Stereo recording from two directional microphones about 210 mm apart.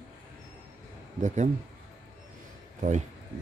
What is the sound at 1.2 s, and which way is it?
Speech, 35° right (ahead or behind).